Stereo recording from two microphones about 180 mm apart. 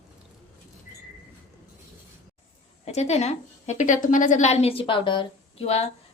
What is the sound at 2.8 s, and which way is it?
A woman's voice, 35° left (ahead or behind).